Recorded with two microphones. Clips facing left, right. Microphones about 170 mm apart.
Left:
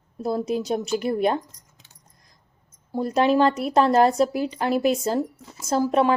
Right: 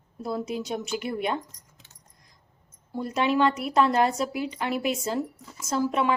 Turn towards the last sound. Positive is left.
turn(degrees=35)  # may be behind; listen again after turning